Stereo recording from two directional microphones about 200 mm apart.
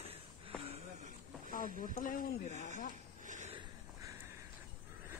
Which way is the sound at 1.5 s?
45° left (ahead or behind).